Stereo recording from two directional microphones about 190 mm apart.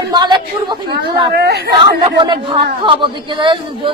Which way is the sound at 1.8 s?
25° right (ahead or behind).